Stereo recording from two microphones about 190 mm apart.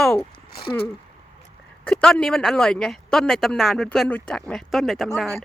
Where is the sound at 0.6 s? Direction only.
55° left (ahead or behind).